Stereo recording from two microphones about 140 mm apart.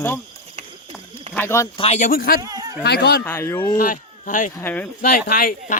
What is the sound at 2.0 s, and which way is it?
Speech, 85° left.